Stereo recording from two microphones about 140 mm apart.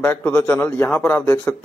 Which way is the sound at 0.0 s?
15° left (ahead or behind).